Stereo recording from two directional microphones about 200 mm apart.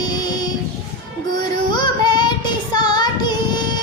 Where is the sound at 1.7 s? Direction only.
20° left (ahead or behind).